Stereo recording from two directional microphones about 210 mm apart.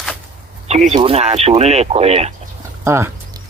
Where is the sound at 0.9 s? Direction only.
30° right (ahead or behind).